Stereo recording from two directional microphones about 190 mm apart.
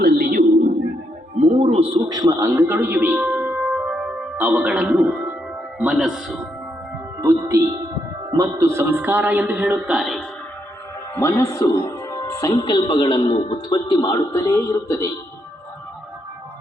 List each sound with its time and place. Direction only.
0.0 s bird: 50° right (ahead or behind)
1.4 s a sound: 35° right (ahead or behind); by 5.3 s 5° right (ahead or behind)
5.8 s speech: 5° right (ahead or behind)
7.2 s a man's voice: 15° right (ahead or behind); by 10.2 s centre (ahead or behind)
11.1 s a woman's voice: 15° left (ahead or behind)